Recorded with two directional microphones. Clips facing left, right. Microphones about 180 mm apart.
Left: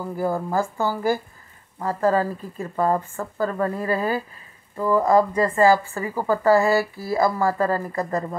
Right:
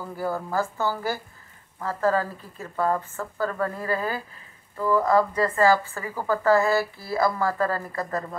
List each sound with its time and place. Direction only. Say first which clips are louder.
0.0 s speech: left 4 dB; 15° left (ahead or behind)